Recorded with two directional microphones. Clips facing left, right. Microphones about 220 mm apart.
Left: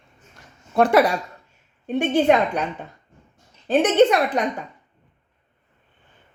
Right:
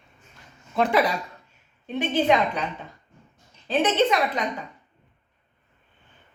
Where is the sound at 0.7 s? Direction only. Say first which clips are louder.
Left 5 dB; 55° left (ahead or behind).